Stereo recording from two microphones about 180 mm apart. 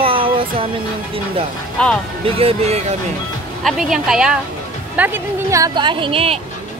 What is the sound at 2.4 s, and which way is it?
Speech, 35° right (ahead or behind).